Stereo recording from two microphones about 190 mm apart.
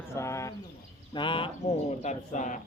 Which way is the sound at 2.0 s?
40° left (ahead or behind).